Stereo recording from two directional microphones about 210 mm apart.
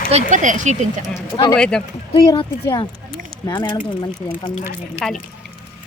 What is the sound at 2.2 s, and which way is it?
Speech, 20° left (ahead or behind).